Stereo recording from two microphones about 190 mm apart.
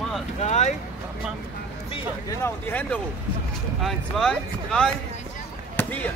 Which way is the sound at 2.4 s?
10° left (ahead or behind).